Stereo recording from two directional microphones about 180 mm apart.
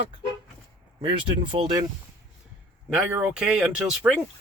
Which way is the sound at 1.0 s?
30° right (ahead or behind).